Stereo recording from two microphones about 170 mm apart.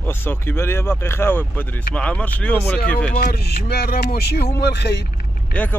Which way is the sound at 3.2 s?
70° left (ahead or behind).